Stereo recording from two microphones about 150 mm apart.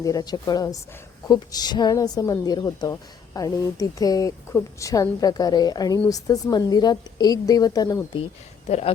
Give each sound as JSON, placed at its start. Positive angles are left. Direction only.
{"t": 0.0, "sound": "a woman's voice", "side_deg": 25}
{"t": 8.2, "sound": "speech", "side_deg": 45}